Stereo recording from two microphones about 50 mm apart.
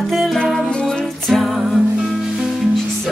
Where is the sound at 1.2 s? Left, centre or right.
Centre.